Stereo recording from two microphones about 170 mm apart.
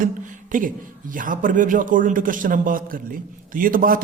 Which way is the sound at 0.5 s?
50° right (ahead or behind).